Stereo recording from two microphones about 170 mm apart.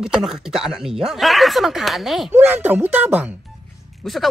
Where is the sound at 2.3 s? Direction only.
10° right (ahead or behind).